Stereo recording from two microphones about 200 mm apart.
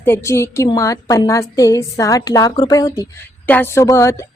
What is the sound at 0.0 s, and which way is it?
A woman's voice, 10° left (ahead or behind).